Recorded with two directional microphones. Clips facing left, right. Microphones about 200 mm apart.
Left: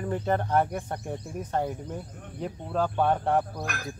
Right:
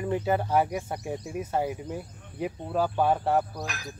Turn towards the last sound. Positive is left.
turn(degrees=55)  # may be behind; listen again after turning